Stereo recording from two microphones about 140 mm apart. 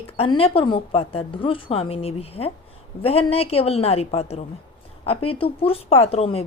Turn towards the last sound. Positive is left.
turn(degrees=45)  # may be behind; listen again after turning